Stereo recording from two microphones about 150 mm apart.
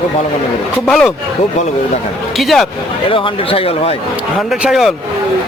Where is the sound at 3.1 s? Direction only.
35° left (ahead or behind).